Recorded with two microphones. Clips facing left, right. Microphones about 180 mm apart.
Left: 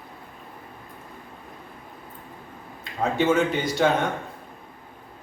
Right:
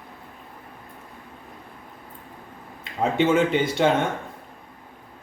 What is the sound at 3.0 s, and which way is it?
Speech, 25° right (ahead or behind).